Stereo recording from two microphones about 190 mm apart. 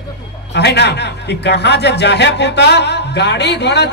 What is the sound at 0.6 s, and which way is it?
Speech, 65° left (ahead or behind).